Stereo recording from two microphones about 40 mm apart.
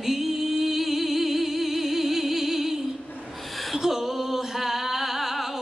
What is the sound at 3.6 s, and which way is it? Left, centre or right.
Singing, centre.